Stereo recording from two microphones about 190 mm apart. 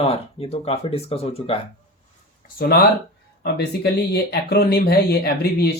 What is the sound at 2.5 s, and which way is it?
Speech, 55° left (ahead or behind).